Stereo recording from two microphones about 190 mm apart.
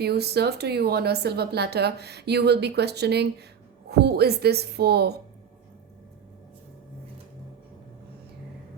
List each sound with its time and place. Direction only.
0.0 s speech: 60° right (ahead or behind)